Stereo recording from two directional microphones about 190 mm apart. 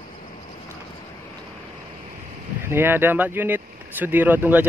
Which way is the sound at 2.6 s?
10° right (ahead or behind).